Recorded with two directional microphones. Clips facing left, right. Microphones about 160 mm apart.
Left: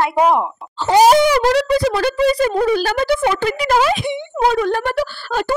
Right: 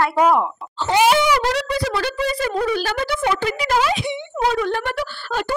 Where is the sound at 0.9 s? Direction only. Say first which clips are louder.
Left 5 dB; 40° left (ahead or behind).